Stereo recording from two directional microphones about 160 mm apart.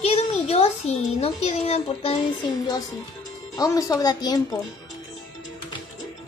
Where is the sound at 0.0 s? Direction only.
40° left (ahead or behind).